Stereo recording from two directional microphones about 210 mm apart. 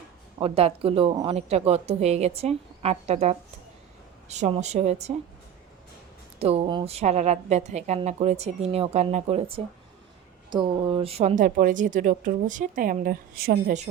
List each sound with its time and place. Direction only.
0.3 s a woman's voice: 25° right (ahead or behind)
6.4 s a woman's voice: 30° right (ahead or behind)
10.5 s a woman's voice: 20° right (ahead or behind); by 13.8 s 45° right (ahead or behind)